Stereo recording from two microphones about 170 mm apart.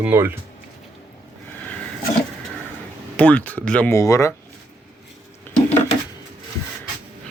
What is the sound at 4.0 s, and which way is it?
Speech, 20° left (ahead or behind).